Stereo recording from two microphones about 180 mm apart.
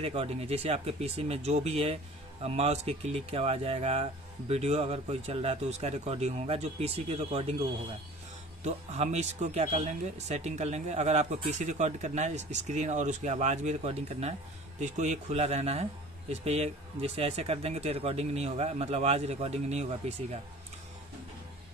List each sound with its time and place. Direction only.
0.0 s speech: 35° right (ahead or behind)
8.6 s speech: 35° right (ahead or behind)